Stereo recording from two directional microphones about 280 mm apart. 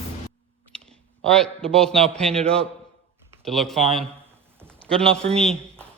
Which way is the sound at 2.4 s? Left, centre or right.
Right.